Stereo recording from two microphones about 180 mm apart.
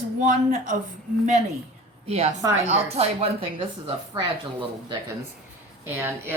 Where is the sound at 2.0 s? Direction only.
40° right (ahead or behind).